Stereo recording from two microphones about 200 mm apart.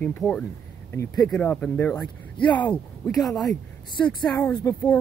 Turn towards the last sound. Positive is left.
turn(degrees=10)  # may be behind; listen again after turning